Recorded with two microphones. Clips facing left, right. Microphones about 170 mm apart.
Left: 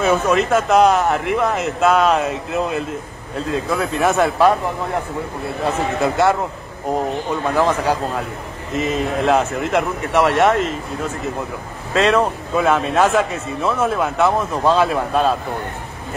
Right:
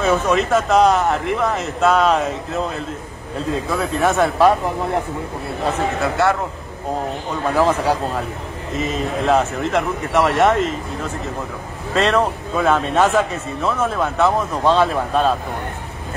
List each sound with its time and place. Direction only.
0.0 s speech: centre (ahead or behind)
3.7 s speech: centre (ahead or behind)
6.0 s speech: 20° left (ahead or behind)
7.5 s speech: centre (ahead or behind)
11.9 s speech: centre (ahead or behind)